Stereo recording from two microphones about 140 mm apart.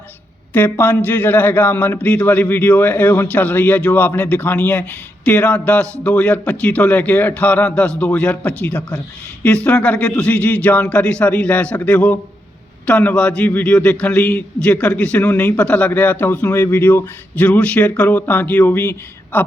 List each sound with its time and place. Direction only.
0.5 s a man's voice: 10° left (ahead or behind)